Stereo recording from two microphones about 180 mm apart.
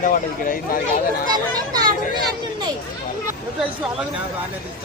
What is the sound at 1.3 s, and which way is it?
Speech, 20° right (ahead or behind).